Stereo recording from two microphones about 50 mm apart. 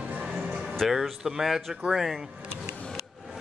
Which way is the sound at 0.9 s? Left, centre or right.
Centre.